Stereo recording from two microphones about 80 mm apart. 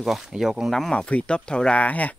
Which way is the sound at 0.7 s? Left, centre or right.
Centre.